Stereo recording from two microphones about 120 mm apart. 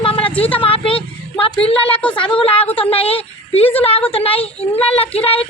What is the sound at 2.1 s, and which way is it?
A woman's voice, 45° left (ahead or behind).